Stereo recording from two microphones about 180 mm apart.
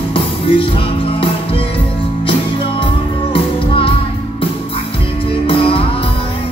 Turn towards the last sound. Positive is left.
turn(degrees=30)  # may be behind; listen again after turning